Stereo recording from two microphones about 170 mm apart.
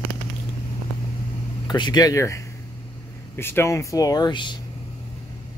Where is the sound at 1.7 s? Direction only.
25° left (ahead or behind).